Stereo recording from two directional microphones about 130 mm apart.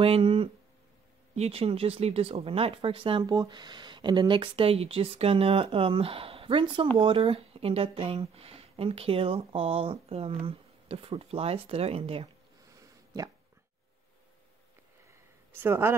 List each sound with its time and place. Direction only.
0.0 s speech: 45° right (ahead or behind)
3.3 s speech: 30° right (ahead or behind)
15.5 s speech: 20° right (ahead or behind)